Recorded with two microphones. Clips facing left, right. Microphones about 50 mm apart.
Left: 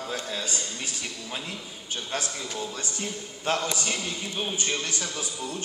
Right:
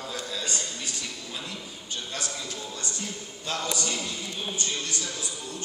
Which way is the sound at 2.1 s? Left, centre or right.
Left.